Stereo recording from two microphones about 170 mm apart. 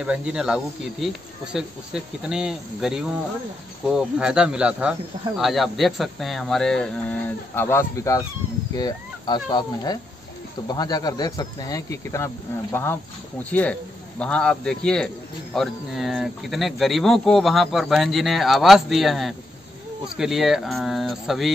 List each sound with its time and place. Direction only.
0.0 s speech: 5° right (ahead or behind); by 12.3 s 20° left (ahead or behind)
13.4 s speech: 10° left (ahead or behind)